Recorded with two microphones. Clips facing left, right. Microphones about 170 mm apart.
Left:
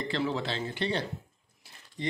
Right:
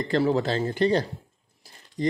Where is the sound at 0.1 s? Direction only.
40° right (ahead or behind).